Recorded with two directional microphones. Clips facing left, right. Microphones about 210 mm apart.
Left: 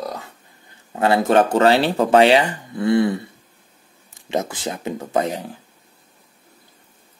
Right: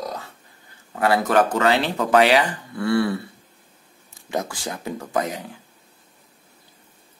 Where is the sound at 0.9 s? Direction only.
25° left (ahead or behind).